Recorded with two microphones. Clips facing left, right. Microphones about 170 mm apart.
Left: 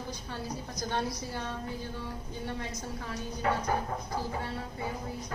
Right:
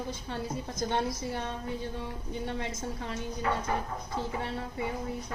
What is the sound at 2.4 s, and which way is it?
Speech, 25° right (ahead or behind).